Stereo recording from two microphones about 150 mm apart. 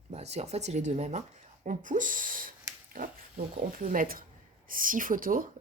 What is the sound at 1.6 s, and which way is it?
A woman's voice, 60° right (ahead or behind).